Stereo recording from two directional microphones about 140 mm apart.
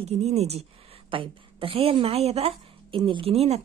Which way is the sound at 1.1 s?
40° right (ahead or behind).